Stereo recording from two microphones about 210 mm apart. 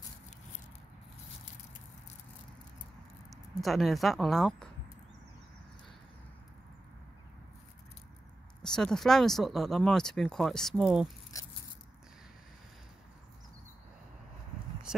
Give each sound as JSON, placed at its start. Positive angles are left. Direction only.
{"t": 3.6, "sound": "speech", "side_deg": 0}
{"t": 8.6, "sound": "speech", "side_deg": 5}
{"t": 14.9, "sound": "a sound", "side_deg": -5}